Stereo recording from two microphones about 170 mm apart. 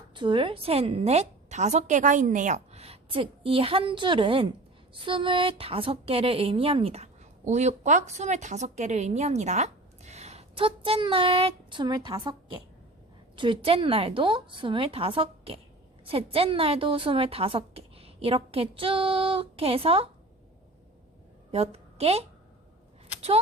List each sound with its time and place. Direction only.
0.1 s a woman's voice: 30° right (ahead or behind)
21.5 s a woman's voice: 35° right (ahead or behind)